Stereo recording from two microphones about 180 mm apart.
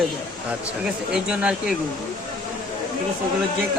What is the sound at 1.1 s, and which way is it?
Speech, 5° right (ahead or behind).